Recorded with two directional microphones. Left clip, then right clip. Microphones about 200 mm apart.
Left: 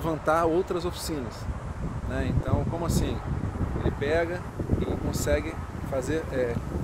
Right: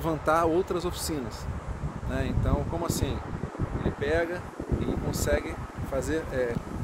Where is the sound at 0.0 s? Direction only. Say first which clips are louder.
Even; centre (ahead or behind).